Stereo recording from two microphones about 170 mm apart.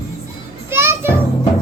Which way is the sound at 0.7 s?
15° right (ahead or behind).